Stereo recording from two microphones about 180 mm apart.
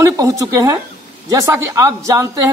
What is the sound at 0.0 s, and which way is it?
Speech, 15° right (ahead or behind).